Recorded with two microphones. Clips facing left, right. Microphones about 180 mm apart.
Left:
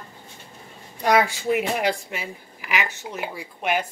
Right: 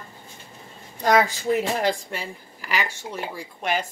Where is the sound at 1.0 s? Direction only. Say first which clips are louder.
Even; 10° left (ahead or behind).